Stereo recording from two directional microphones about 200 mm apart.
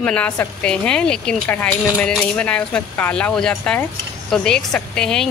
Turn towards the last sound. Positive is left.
turn(degrees=5)  # may be behind; listen again after turning